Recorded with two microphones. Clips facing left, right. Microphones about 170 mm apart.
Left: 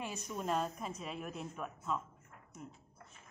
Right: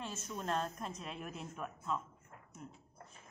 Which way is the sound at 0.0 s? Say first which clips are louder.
Left 2 dB; 15° left (ahead or behind).